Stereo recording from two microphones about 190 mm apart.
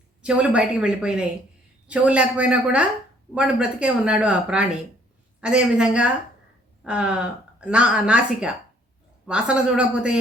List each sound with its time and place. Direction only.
0.2 s speech: 5° right (ahead or behind)